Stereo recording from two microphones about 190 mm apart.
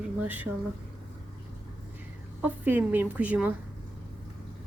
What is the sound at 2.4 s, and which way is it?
A woman's voice, 10° right (ahead or behind).